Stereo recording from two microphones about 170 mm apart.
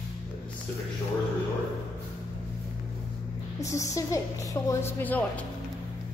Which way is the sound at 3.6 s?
20° left (ahead or behind).